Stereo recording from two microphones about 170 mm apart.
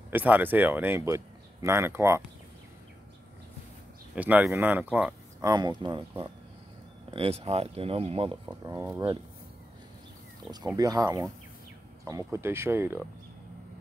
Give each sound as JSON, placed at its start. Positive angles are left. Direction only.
{"t": 0.1, "sound": "speech", "side_deg": -10}
{"t": 4.1, "sound": "speech", "side_deg": -10}
{"t": 5.4, "sound": "speech", "side_deg": -25}
{"t": 8.6, "sound": "speech", "side_deg": -15}
{"t": 10.8, "sound": "speech", "side_deg": -20}